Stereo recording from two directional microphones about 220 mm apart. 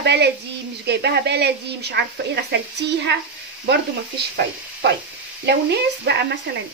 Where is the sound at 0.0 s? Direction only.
50° right (ahead or behind).